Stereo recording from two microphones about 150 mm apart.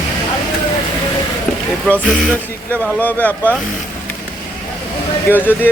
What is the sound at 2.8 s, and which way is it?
Speech, 10° left (ahead or behind).